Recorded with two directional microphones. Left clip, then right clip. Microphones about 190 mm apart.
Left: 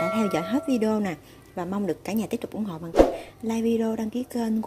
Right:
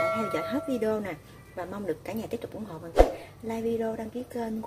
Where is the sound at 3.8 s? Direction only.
35° left (ahead or behind).